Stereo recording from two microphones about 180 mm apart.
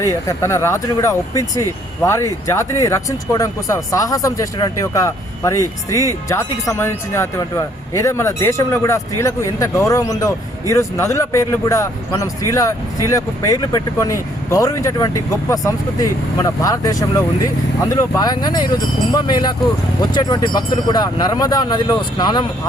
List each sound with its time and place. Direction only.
0.0 s speech: 20° left (ahead or behind)